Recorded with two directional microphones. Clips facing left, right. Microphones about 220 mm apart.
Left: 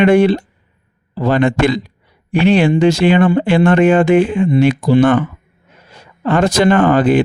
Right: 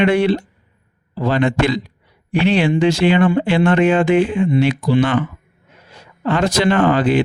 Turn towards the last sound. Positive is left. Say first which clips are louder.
# left 3 dB
turn(degrees=50)  # may be behind; listen again after turning